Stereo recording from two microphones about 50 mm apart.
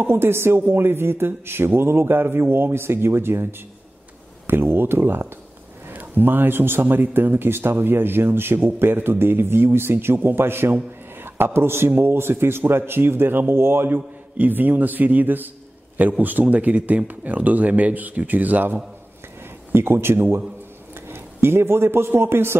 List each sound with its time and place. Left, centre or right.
0.0 s a man's voice: right
4.5 s a man's voice: right
5.9 s a man's voice: right
13.9 s speech: right
19.7 s a man's voice: right